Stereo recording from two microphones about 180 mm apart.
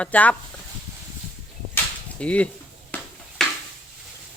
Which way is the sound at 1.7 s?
5° left (ahead or behind).